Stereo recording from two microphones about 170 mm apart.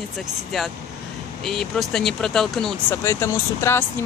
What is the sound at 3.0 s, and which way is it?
Speech, 15° left (ahead or behind).